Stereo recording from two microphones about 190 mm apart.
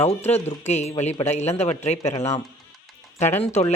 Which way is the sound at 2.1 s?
15° left (ahead or behind).